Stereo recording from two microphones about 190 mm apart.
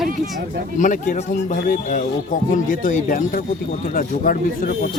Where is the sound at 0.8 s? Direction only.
40° left (ahead or behind).